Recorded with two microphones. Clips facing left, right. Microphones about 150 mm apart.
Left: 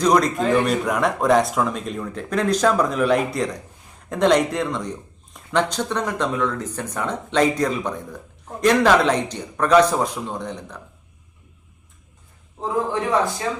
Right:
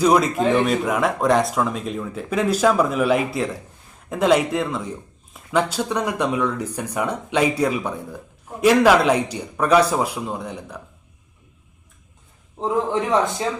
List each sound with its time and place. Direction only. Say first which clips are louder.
0.0 s a man's voice: right 1 dB; 5° right (ahead or behind)
12.5 s a man's voice: right 2 dB; 20° right (ahead or behind)